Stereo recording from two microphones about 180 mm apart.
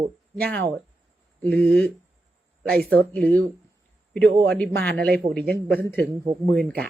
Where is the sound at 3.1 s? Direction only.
5° left (ahead or behind).